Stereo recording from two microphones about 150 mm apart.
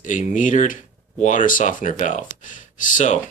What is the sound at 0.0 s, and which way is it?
Speech, 60° left (ahead or behind).